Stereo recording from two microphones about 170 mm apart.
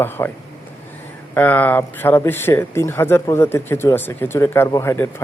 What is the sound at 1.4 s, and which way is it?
Speech, 10° left (ahead or behind).